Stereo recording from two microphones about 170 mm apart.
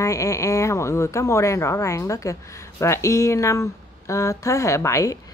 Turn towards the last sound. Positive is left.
turn(degrees=20)  # may be behind; listen again after turning